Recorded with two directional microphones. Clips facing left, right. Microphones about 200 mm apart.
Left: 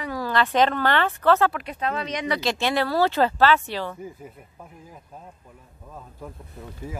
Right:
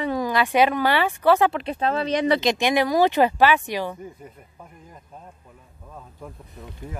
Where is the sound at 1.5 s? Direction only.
25° right (ahead or behind).